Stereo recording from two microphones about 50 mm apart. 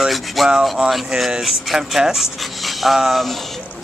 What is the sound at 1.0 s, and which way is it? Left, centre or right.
Speech, centre.